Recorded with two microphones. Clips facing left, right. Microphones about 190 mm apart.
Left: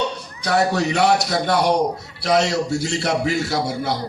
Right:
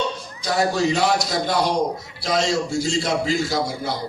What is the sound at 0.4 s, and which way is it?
A man's voice, 65° left (ahead or behind).